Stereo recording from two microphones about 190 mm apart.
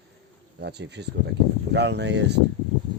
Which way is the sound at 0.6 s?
65° right (ahead or behind).